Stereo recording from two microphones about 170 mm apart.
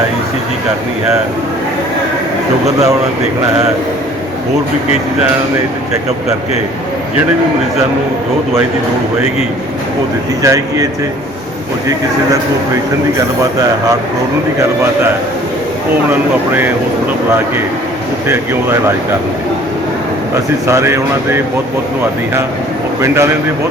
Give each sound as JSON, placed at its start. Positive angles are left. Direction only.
{"t": 10.4, "sound": "speech", "side_deg": -20}
{"t": 18.3, "sound": "speech", "side_deg": -15}
{"t": 20.7, "sound": "speech", "side_deg": -15}
{"t": 23.0, "sound": "speech", "side_deg": -15}